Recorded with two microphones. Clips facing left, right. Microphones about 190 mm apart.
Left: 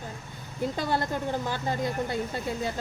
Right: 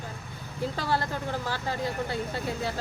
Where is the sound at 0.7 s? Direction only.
20° left (ahead or behind).